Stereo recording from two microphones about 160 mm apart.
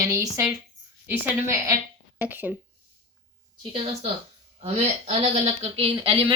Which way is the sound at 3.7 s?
40° right (ahead or behind).